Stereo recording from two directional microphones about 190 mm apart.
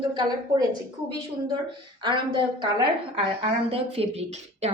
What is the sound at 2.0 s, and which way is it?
Speech, 25° right (ahead or behind).